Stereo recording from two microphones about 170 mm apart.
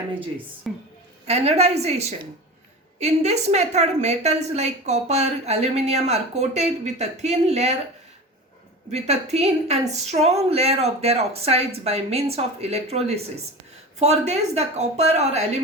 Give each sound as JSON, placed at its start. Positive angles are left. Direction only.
{"t": 0.7, "sound": "a woman's voice", "side_deg": 0}
{"t": 1.3, "sound": "a woman's voice", "side_deg": -40}
{"t": 8.9, "sound": "a woman's voice", "side_deg": -40}